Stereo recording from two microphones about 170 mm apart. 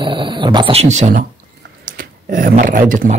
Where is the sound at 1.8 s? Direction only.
55° right (ahead or behind).